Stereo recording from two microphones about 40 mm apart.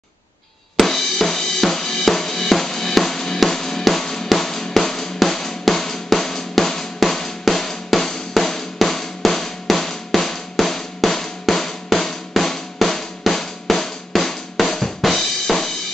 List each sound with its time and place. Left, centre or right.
0.7 s drum: centre
3.3 s music: centre
10.5 s drum: centre
13.3 s drum: centre
15.1 s music: centre